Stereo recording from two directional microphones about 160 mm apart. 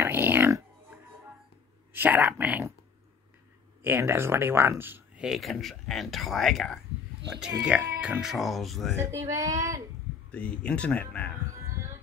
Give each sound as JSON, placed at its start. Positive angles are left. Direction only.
{"t": 0.0, "sound": "music", "side_deg": -15}
{"t": 1.9, "sound": "speech", "side_deg": -10}
{"t": 3.8, "sound": "speech", "side_deg": -15}
{"t": 8.9, "sound": "speech", "side_deg": -15}
{"t": 10.3, "sound": "speech", "side_deg": 5}
{"t": 11.6, "sound": "music", "side_deg": -15}